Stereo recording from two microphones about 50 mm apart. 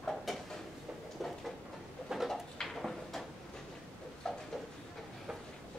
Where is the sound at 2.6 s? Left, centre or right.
Centre.